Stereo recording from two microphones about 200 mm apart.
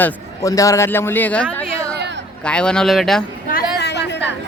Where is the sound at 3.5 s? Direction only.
50° left (ahead or behind).